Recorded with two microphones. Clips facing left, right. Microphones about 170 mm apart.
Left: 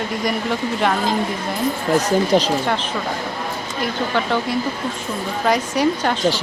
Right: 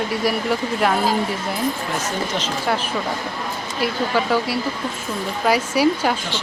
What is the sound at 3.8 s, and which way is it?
Speech, 5° right (ahead or behind).